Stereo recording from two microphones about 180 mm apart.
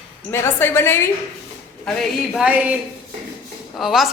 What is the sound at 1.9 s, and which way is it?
Speech, centre (ahead or behind).